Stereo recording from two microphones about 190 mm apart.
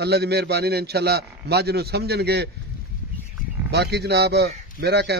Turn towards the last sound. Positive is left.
turn(degrees=-60)  # may be behind; listen again after turning